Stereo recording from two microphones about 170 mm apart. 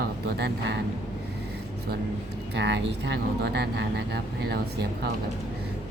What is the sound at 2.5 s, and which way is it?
Speech, 90° right.